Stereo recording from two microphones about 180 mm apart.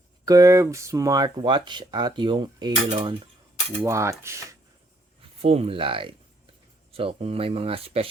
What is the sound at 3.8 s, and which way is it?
Speech, 15° right (ahead or behind).